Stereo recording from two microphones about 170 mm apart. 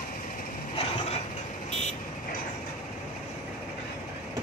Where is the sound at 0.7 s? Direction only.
35° left (ahead or behind).